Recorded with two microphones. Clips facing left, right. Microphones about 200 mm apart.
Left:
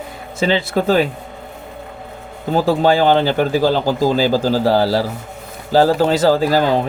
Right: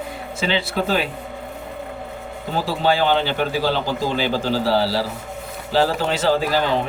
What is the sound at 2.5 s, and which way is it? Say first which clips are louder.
A man's voice: left 6 dB; 45° left (ahead or behind).